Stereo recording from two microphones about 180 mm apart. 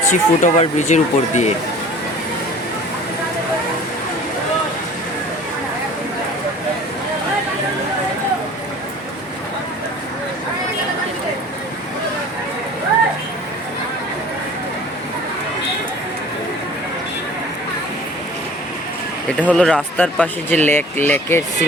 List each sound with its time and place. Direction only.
0.1 s speech: 40° left (ahead or behind)
19.4 s speech: 5° left (ahead or behind)